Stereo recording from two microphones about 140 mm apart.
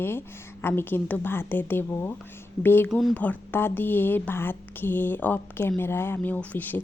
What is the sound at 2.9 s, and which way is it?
Speech, centre (ahead or behind).